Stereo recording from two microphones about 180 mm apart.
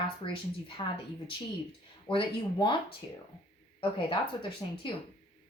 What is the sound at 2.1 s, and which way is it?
Speech, 30° left (ahead or behind).